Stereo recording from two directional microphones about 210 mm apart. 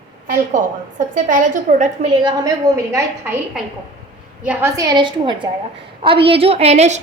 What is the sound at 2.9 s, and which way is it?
A woman's voice, 10° right (ahead or behind).